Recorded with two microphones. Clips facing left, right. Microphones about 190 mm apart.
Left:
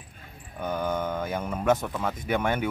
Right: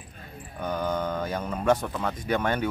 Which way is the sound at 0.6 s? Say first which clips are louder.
Even; 10° left (ahead or behind).